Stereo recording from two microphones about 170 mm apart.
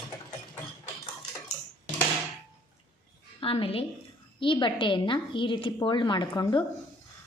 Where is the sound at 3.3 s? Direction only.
35° left (ahead or behind).